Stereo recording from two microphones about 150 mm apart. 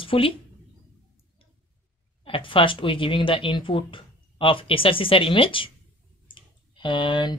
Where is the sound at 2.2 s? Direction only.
35° left (ahead or behind).